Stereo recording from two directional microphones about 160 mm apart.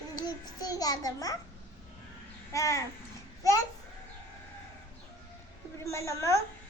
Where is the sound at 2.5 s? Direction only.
20° left (ahead or behind).